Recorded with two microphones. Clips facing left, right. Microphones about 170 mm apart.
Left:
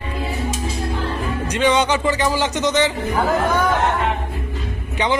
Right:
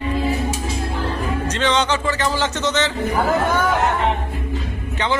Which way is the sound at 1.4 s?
10° left (ahead or behind).